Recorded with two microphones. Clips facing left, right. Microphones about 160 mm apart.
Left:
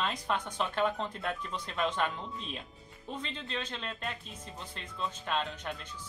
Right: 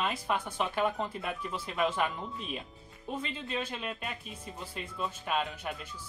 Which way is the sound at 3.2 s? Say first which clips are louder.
Right 3 dB; 10° right (ahead or behind).